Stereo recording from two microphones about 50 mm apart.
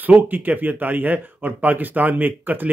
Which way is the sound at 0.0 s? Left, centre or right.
Right.